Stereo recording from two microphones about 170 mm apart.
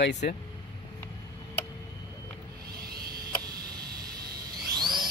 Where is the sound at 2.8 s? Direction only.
65° right (ahead or behind).